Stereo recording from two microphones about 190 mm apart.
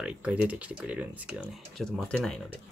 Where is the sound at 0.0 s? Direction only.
5° right (ahead or behind).